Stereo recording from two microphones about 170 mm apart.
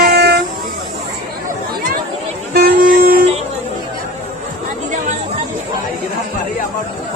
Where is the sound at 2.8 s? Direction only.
55° right (ahead or behind).